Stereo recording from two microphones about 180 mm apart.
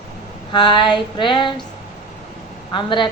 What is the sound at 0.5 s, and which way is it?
A woman's voice, 25° left (ahead or behind).